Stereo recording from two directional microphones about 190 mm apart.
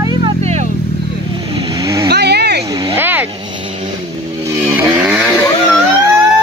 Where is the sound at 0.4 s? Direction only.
35° right (ahead or behind).